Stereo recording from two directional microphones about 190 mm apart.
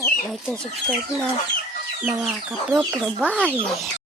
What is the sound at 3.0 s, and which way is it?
Speech, 5° right (ahead or behind).